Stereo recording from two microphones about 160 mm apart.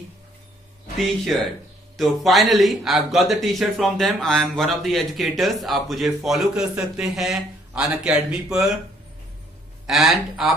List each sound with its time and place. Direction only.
0.9 s a man's voice: centre (ahead or behind)
9.8 s a man's voice: centre (ahead or behind)